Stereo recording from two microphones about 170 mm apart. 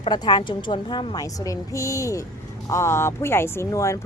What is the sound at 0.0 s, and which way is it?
A woman's voice, 25° left (ahead or behind).